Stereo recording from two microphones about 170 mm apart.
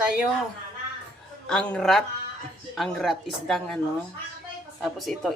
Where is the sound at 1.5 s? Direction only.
5° left (ahead or behind).